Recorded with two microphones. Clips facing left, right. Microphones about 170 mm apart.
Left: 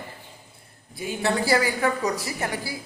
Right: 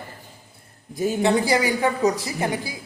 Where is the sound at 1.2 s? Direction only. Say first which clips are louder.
Right 1 dB; 20° right (ahead or behind).